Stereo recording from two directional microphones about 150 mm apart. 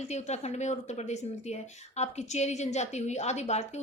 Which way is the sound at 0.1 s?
45° left (ahead or behind).